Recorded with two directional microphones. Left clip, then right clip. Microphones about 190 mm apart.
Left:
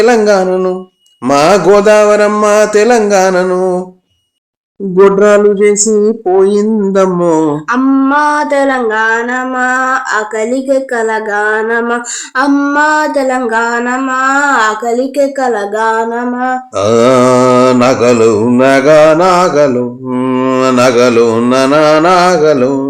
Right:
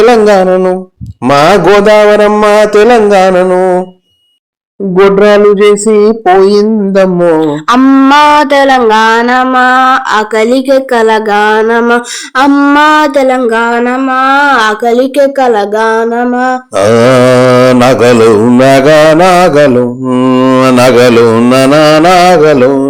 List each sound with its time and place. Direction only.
0.0 s music: 30° right (ahead or behind)
4.9 s music: 20° right (ahead or behind)
6.0 s speech: 20° right (ahead or behind)
7.7 s a sound: 30° right (ahead or behind)
16.7 s mantra: 30° right (ahead or behind)